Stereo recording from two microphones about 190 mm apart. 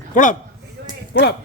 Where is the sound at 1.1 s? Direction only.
65° left (ahead or behind).